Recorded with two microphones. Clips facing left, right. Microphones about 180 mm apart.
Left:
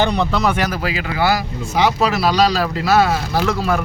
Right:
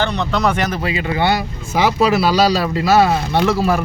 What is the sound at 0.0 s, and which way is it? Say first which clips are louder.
Speech: left 1 dB; 10° left (ahead or behind).